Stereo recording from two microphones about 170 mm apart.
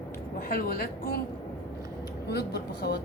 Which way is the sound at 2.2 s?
75° left (ahead or behind).